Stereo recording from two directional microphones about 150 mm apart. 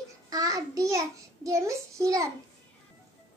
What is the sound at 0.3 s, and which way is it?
A child's voice, 25° right (ahead or behind).